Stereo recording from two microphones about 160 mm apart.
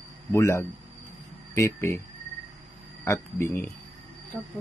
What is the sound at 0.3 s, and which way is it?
Speech, 15° left (ahead or behind).